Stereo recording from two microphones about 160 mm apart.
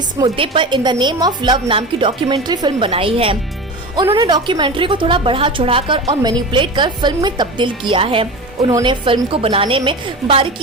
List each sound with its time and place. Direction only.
0.2 s a woman's voice: 30° right (ahead or behind)